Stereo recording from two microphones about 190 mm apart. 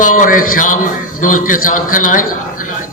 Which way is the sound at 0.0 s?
45° left (ahead or behind).